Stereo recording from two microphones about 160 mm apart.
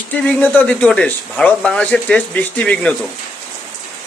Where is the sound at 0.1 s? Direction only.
10° left (ahead or behind).